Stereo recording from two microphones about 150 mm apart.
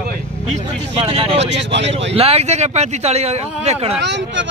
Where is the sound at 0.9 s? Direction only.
40° right (ahead or behind).